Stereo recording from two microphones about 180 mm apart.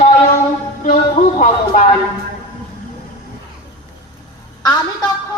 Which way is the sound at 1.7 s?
45° left (ahead or behind).